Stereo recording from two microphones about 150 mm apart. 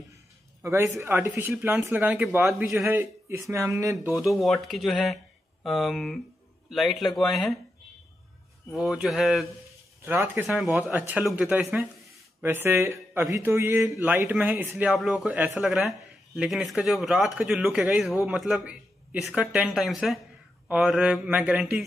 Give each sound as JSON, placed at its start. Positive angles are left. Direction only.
{"t": 0.6, "sound": "speech", "side_deg": -20}
{"t": 4.1, "sound": "speech", "side_deg": 0}
{"t": 8.7, "sound": "speech", "side_deg": -5}
{"t": 10.0, "sound": "speech", "side_deg": -10}
{"t": 10.4, "sound": "speech", "side_deg": 0}